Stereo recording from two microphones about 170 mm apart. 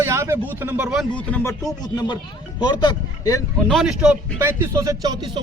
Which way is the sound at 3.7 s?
Centre (ahead or behind).